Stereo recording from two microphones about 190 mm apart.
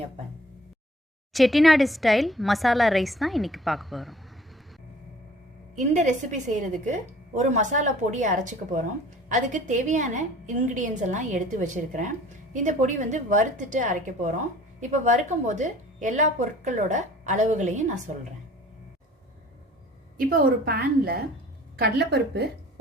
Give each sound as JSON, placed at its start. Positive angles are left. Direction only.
{"t": 1.3, "sound": "a woman's voice", "side_deg": 0}
{"t": 5.7, "sound": "a woman's voice", "side_deg": -40}
{"t": 20.1, "sound": "a woman's voice", "side_deg": -50}